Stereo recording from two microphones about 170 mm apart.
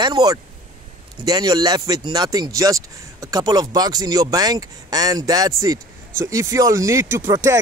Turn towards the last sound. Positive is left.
turn(degrees=-15)  # may be behind; listen again after turning